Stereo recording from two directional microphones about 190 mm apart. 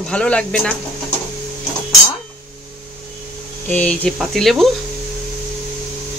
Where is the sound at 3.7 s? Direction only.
5° left (ahead or behind).